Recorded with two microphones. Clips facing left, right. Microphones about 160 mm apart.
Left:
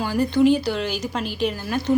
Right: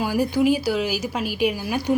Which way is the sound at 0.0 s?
10° right (ahead or behind).